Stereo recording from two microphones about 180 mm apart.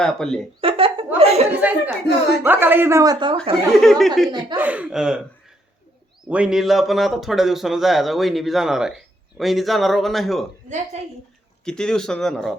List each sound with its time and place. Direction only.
0.0 s speech: 5° left (ahead or behind)
0.6 s chuckle: 30° right (ahead or behind)
1.5 s speech: 10° right (ahead or behind)
3.7 s speech: centre (ahead or behind)
6.2 s speech: 5° right (ahead or behind)
10.9 s a woman's voice: 40° right (ahead or behind)
11.6 s speech: 5° left (ahead or behind)